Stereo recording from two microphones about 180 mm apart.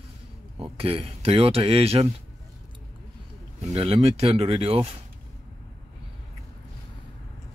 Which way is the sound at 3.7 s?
35° right (ahead or behind).